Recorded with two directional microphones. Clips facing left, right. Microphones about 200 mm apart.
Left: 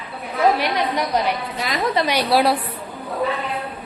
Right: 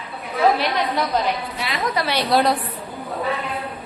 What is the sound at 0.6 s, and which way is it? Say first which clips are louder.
A woman's voice: even; 15° left (ahead or behind).